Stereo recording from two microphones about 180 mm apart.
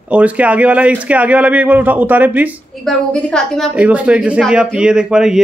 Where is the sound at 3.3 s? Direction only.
Centre (ahead or behind).